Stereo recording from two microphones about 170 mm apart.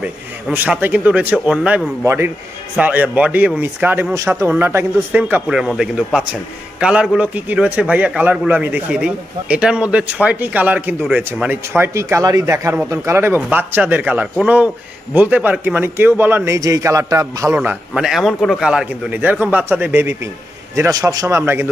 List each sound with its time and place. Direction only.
0.0 s a man's voice: 10° right (ahead or behind)
17.6 s a man's voice: 5° right (ahead or behind)